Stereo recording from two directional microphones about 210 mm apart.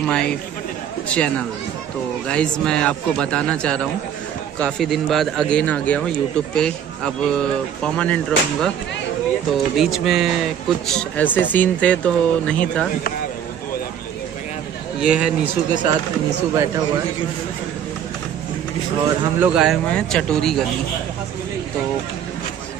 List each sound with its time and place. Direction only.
0.0 s a man's voice: 5° left (ahead or behind)
15.0 s speech: 5° right (ahead or behind)
16.5 s speech: 15° right (ahead or behind)
19.0 s speech: 5° right (ahead or behind)